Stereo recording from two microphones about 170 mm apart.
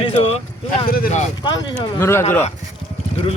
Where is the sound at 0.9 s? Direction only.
60° left (ahead or behind).